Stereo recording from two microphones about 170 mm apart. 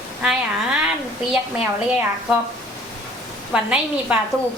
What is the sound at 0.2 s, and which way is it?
Speech, 5° right (ahead or behind).